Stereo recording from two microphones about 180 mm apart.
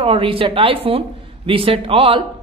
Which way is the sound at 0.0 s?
30° right (ahead or behind).